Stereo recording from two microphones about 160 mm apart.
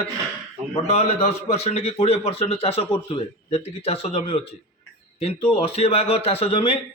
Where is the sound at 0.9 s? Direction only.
40° left (ahead or behind).